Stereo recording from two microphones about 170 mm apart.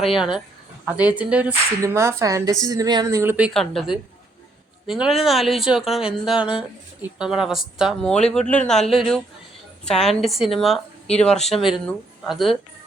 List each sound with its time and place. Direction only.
0.0 s a woman's voice: centre (ahead or behind)